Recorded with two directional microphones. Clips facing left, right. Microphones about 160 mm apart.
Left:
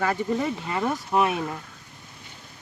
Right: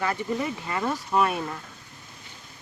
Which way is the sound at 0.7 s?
20° left (ahead or behind).